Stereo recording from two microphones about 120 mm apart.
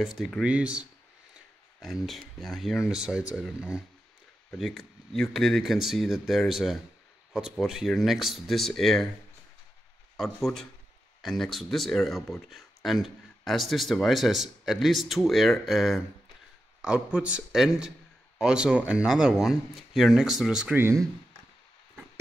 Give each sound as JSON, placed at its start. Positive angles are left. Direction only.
{"t": 0.0, "sound": "speech", "side_deg": -5}
{"t": 1.8, "sound": "speech", "side_deg": 0}
{"t": 10.1, "sound": "speech", "side_deg": 0}
{"t": 20.7, "sound": "speech", "side_deg": -20}